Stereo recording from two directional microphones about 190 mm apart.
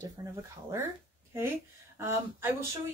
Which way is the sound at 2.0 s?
10° right (ahead or behind).